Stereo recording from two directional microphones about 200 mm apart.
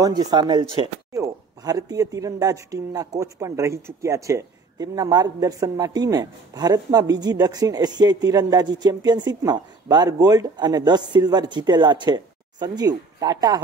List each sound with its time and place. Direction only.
0.0 s speech: 20° right (ahead or behind)